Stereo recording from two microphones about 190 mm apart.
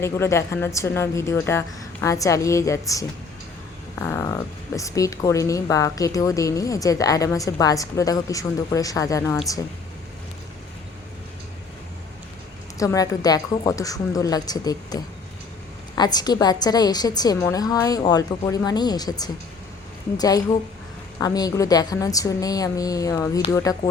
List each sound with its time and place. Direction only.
0.0 s speech: 15° left (ahead or behind)
12.8 s a woman's voice: 15° left (ahead or behind)